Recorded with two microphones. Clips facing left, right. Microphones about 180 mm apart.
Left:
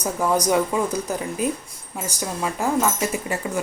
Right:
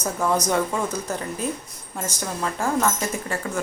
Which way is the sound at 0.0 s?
15° left (ahead or behind).